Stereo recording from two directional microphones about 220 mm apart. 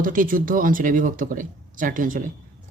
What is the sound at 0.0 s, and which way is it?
Speech, 40° right (ahead or behind).